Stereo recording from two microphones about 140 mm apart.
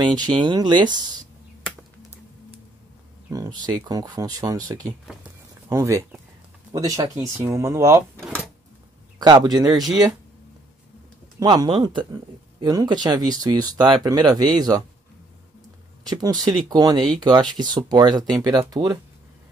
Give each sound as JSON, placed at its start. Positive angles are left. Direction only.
{"t": 0.0, "sound": "speech", "side_deg": -30}
{"t": 3.3, "sound": "speech", "side_deg": -25}
{"t": 9.2, "sound": "speech", "side_deg": -30}
{"t": 11.3, "sound": "speech", "side_deg": -30}
{"t": 16.1, "sound": "speech", "side_deg": -30}